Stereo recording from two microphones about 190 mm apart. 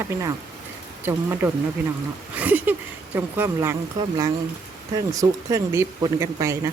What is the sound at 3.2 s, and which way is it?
Speech, 10° right (ahead or behind).